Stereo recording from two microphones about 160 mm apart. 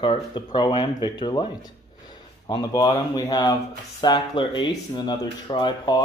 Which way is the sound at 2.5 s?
25° left (ahead or behind).